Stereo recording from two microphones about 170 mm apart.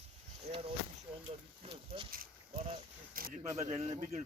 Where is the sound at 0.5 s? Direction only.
40° right (ahead or behind).